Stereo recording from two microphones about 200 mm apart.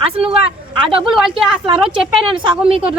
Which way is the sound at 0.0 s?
30° right (ahead or behind).